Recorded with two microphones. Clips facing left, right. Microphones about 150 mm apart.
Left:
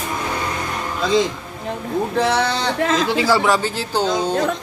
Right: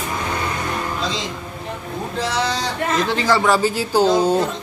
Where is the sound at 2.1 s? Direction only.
60° left (ahead or behind).